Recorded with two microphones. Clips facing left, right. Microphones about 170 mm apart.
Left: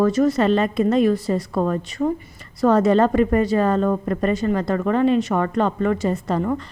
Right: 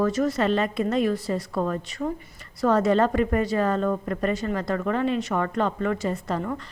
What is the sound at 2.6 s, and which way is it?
A woman's voice, 30° left (ahead or behind).